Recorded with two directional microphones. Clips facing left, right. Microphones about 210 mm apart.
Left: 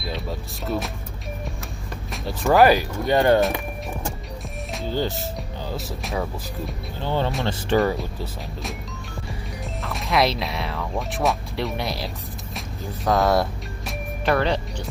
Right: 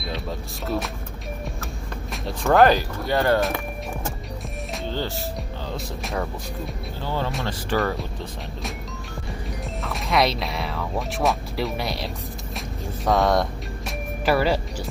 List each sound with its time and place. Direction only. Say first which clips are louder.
0.0 s speech: even; centre (ahead or behind)
2.2 s speech: left 1 dB; 5° left (ahead or behind)
3.1 s speech: left 3 dB; 20° left (ahead or behind)
4.8 s speech: left 4 dB; 10° left (ahead or behind)
5.7 s speech: left 1 dB; centre (ahead or behind)
7.0 s speech: left 3 dB; 25° left (ahead or behind)
8.0 s speech: left 1 dB; centre (ahead or behind)
9.8 s speech: even; centre (ahead or behind)
12.5 s music: even; centre (ahead or behind)